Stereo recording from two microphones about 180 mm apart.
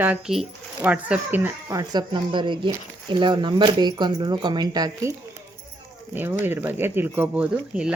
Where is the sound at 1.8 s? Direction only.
25° right (ahead or behind).